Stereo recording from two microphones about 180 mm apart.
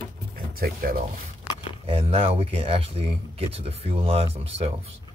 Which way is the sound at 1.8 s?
35° right (ahead or behind).